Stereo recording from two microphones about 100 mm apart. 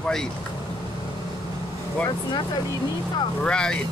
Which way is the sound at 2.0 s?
40° left (ahead or behind).